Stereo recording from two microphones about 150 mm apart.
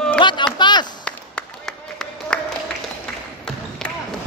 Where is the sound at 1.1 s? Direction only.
5° left (ahead or behind).